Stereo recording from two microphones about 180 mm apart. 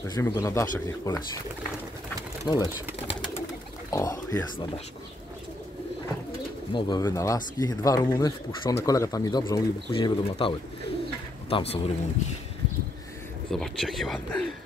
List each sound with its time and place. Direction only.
0.1 s speech: 15° left (ahead or behind)
2.4 s speech: 25° left (ahead or behind)
6.7 s speech: 25° left (ahead or behind)
13.5 s speech: centre (ahead or behind)